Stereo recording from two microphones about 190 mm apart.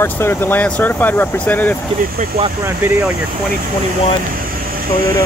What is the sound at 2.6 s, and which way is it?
Speech, 10° right (ahead or behind).